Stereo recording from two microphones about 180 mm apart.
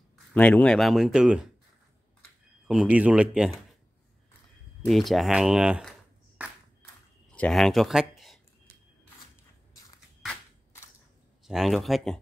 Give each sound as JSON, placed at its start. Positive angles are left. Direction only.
{"t": 0.3, "sound": "speech", "side_deg": 10}
{"t": 2.7, "sound": "speech", "side_deg": -5}
{"t": 4.8, "sound": "speech", "side_deg": 0}
{"t": 11.4, "sound": "speech", "side_deg": 0}